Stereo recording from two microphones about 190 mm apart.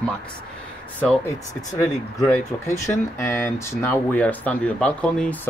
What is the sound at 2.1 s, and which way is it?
Speech, 10° left (ahead or behind).